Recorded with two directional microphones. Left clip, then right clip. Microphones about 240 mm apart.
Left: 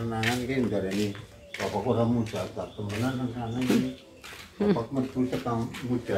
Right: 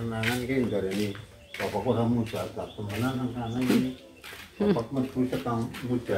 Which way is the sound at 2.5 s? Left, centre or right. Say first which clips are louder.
Even; centre.